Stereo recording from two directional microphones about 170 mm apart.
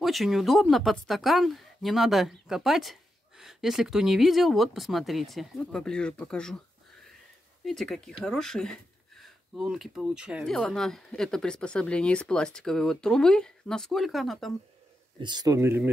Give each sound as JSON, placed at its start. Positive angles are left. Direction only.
{"t": 0.0, "sound": "speech", "side_deg": 0}
{"t": 7.6, "sound": "speech", "side_deg": 0}
{"t": 15.1, "sound": "speech", "side_deg": -25}